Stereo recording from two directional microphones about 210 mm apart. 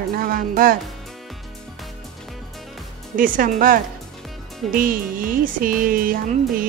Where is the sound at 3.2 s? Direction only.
40° right (ahead or behind).